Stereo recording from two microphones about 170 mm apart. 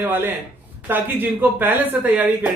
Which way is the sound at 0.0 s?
10° right (ahead or behind).